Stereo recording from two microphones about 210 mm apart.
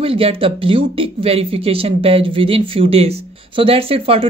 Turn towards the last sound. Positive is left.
turn(degrees=-25)  # may be behind; listen again after turning